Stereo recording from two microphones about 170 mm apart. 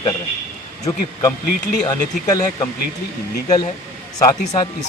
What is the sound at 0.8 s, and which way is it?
Speech, 20° left (ahead or behind).